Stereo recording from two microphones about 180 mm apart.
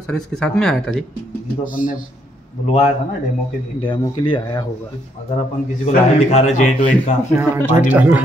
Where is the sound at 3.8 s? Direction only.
25° left (ahead or behind).